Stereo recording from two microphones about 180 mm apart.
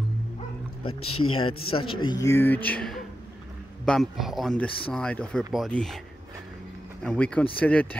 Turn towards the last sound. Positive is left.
turn(degrees=10)  # may be behind; listen again after turning